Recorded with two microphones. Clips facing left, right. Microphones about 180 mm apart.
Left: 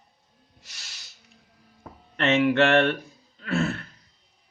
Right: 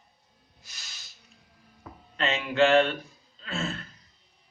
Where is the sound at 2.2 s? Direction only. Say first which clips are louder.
Left 4 dB; 70° left (ahead or behind).